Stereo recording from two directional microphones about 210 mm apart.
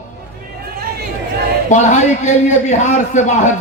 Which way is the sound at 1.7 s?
35° left (ahead or behind).